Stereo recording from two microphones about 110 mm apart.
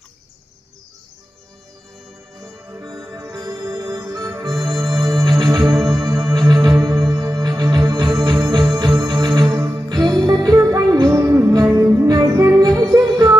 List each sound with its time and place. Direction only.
3.1 s music: 35° right (ahead or behind)
5.8 s music: centre (ahead or behind)
6.0 s music: 35° right (ahead or behind)